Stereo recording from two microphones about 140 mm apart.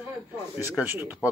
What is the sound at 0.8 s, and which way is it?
Speech, 15° right (ahead or behind).